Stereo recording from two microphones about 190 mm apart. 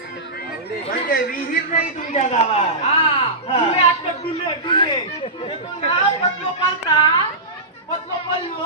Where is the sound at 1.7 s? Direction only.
40° left (ahead or behind).